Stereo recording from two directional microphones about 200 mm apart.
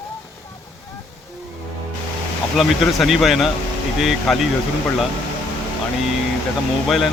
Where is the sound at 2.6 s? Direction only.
Centre (ahead or behind).